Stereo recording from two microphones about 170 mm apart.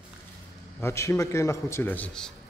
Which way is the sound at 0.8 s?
15° left (ahead or behind).